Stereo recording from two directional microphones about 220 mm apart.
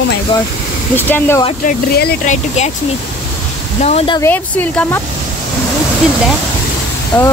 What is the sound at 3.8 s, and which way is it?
Speech, 30° left (ahead or behind).